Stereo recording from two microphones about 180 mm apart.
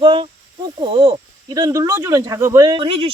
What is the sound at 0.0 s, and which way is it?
Speech, 25° right (ahead or behind).